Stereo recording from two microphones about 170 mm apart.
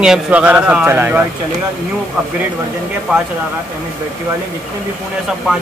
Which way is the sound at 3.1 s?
5° right (ahead or behind).